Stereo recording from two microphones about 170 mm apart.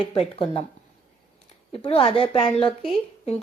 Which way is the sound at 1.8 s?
35° left (ahead or behind).